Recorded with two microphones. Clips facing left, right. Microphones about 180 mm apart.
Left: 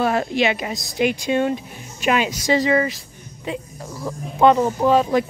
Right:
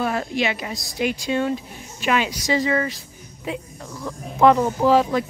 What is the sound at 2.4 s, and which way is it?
Speech, 65° left (ahead or behind).